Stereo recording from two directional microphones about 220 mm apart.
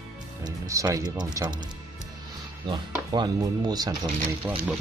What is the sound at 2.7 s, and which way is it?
Speech, 20° right (ahead or behind).